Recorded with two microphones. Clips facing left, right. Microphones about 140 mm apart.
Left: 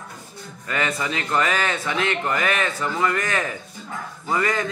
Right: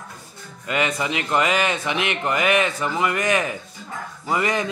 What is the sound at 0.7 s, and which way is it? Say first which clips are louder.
A man's voice: right 2 dB; 15° right (ahead or behind).